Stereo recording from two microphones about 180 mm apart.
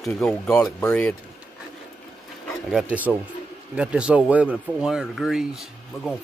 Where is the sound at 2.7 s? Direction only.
5° right (ahead or behind).